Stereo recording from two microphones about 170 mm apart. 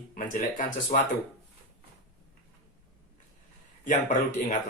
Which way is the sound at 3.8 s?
50° left (ahead or behind).